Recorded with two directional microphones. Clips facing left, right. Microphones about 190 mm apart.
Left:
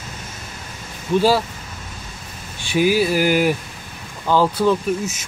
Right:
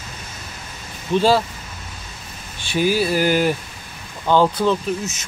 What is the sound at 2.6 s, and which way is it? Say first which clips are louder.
Speech: left 2 dB; 15° left (ahead or behind).